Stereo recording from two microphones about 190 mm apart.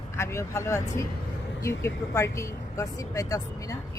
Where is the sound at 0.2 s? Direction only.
15° left (ahead or behind).